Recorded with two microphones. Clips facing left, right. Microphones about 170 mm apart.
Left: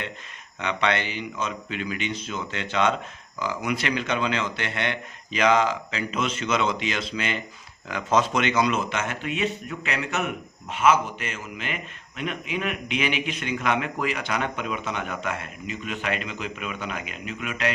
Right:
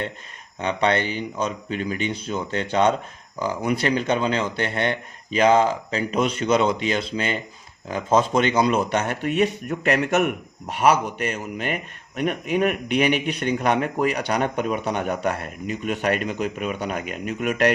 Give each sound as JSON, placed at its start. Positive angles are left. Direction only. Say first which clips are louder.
{"t": 0.6, "sound": "speech", "louder": "right 4 dB", "side_deg": -40}
{"t": 5.4, "sound": "speech", "louder": "right 4 dB", "side_deg": -30}